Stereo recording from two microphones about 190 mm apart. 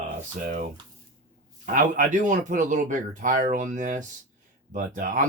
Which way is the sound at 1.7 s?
45° right (ahead or behind).